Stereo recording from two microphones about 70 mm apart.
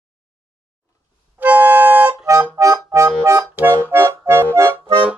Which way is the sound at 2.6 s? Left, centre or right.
Right.